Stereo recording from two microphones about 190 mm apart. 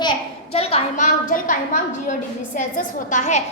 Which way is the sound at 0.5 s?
30° left (ahead or behind).